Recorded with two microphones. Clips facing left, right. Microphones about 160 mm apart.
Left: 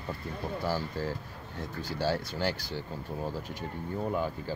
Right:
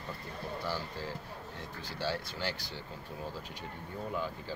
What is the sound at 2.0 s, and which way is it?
Speech, 45° left (ahead or behind).